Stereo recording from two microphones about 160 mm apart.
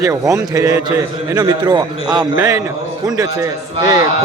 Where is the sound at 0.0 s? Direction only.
20° right (ahead or behind).